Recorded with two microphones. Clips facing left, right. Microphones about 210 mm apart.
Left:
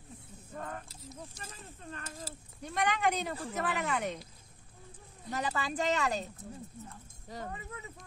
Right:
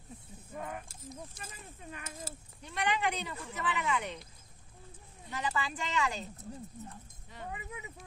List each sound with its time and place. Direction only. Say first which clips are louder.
0.6 s a sound: right 1 dB; 10° right (ahead or behind)
1.8 s speech: left 1 dB; 10° right (ahead or behind)
2.6 s speech: left 2 dB; 45° left (ahead or behind)
5.3 s speech: left 1 dB; 40° left (ahead or behind)
7.5 s speech: even; 15° right (ahead or behind)